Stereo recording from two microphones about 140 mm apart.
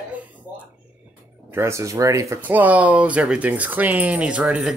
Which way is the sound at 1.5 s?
20° right (ahead or behind).